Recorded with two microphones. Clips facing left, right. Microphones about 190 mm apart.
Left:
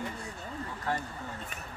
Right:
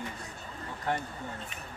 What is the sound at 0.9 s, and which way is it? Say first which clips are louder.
Speech: right 1 dB; 20° right (ahead or behind).